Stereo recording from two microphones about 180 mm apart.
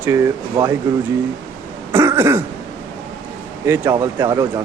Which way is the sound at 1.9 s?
15° right (ahead or behind).